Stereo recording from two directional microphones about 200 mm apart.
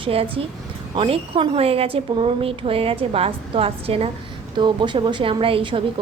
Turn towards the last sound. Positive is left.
turn(degrees=-25)  # may be behind; listen again after turning